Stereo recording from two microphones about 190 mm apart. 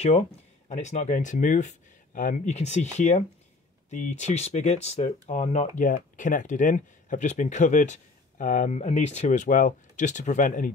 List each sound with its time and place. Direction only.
0.0 s speech: 35° left (ahead or behind)